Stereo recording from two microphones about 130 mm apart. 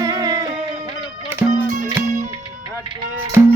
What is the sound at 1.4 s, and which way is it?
Music, 15° right (ahead or behind).